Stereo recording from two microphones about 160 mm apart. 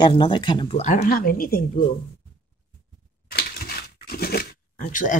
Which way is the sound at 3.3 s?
75° left (ahead or behind).